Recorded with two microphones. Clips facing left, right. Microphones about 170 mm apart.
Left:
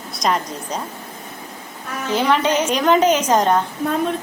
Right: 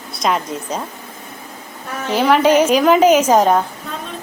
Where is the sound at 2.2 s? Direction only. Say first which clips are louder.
Right 6 dB; 10° right (ahead or behind).